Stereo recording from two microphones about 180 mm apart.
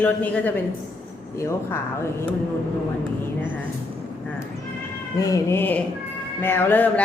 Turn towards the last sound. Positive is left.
turn(degrees=10)  # may be behind; listen again after turning